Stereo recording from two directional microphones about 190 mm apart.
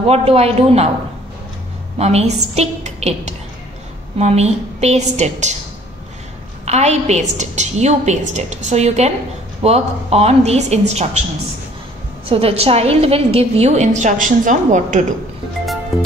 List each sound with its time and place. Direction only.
0.0 s a woman's voice: 30° right (ahead or behind)
2.0 s a woman's voice: 35° right (ahead or behind)
6.6 s a woman's voice: 35° right (ahead or behind)
12.3 s a woman's voice: 30° right (ahead or behind)